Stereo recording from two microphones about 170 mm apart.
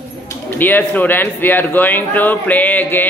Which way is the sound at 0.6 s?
10° left (ahead or behind).